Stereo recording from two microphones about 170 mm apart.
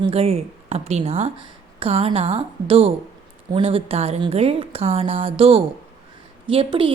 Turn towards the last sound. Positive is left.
turn(degrees=-30)  # may be behind; listen again after turning